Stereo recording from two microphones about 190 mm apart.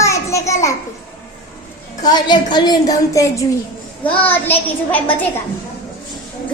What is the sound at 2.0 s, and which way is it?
A woman's voice, 20° left (ahead or behind).